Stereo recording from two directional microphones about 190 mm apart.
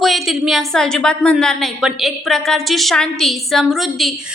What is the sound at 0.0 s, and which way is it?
A woman's voice, centre (ahead or behind).